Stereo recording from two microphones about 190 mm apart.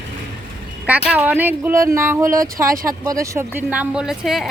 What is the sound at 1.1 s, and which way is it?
A woman's voice, 10° right (ahead or behind).